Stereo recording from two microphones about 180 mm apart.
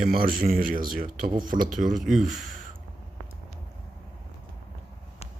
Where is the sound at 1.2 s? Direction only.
25° right (ahead or behind).